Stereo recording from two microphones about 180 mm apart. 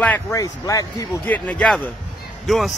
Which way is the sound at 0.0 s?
15° left (ahead or behind).